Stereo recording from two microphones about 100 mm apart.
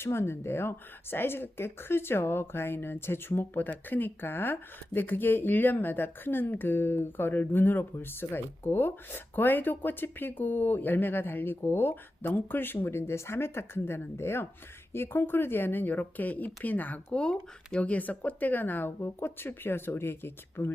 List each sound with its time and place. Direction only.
0.0 s speech: 25° left (ahead or behind)